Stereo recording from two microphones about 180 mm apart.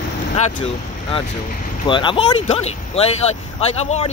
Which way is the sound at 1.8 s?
25° left (ahead or behind).